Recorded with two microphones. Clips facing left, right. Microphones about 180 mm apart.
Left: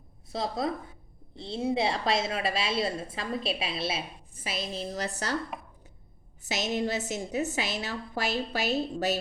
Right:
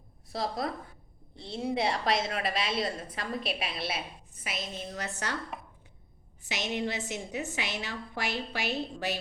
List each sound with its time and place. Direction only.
0.3 s a woman's voice: 25° left (ahead or behind)
6.4 s a woman's voice: 40° left (ahead or behind)